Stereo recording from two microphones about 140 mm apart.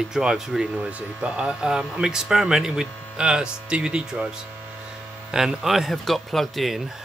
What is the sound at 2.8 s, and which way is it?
Mains hum, 15° left (ahead or behind).